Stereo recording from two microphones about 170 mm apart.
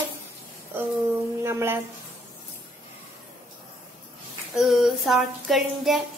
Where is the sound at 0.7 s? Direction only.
15° right (ahead or behind).